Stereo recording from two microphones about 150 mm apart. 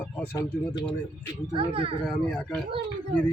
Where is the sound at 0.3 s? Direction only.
30° left (ahead or behind).